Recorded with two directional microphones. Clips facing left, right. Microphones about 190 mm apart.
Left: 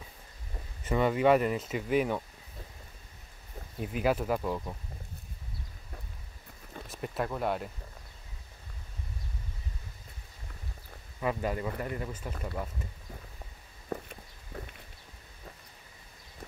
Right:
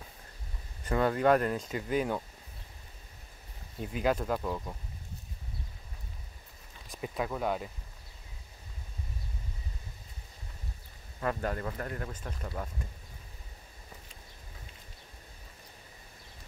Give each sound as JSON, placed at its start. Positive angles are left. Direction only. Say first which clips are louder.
{"t": 0.8, "sound": "speech", "louder": "left 1 dB", "side_deg": 5}
{"t": 3.8, "sound": "speech", "louder": "left 1 dB", "side_deg": 5}
{"t": 6.9, "sound": "speech", "louder": "even", "side_deg": 0}
{"t": 11.1, "sound": "speech", "louder": "left 1 dB", "side_deg": 5}
{"t": 13.8, "sound": "a sound", "louder": "left 17 dB", "side_deg": 65}